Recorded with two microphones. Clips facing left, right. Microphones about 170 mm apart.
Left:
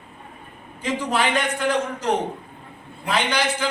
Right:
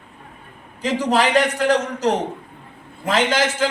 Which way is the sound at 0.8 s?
40° right (ahead or behind).